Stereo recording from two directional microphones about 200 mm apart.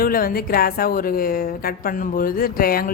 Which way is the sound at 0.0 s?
45° left (ahead or behind).